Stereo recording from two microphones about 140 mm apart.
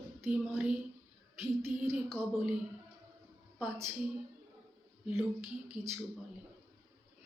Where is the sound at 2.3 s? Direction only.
10° right (ahead or behind).